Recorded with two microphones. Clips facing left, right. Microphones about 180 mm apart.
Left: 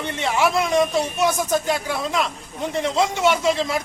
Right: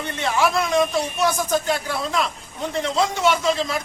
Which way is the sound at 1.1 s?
20° left (ahead or behind).